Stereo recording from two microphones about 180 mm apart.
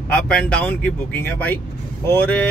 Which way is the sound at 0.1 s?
5° left (ahead or behind).